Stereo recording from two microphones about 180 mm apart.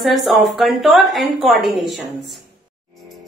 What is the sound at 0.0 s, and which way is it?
A woman's voice, centre (ahead or behind).